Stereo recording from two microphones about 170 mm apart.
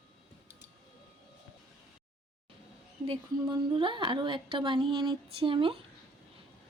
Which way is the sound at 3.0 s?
30° right (ahead or behind).